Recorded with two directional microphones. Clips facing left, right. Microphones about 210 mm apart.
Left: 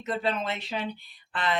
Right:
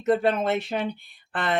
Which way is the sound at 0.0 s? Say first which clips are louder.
Right 8 dB; 55° right (ahead or behind).